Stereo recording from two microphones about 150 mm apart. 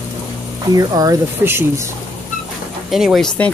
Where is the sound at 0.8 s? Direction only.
25° right (ahead or behind).